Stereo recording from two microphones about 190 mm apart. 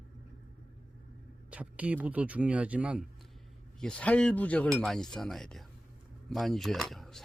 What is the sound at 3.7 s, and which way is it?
Speech, 5° left (ahead or behind).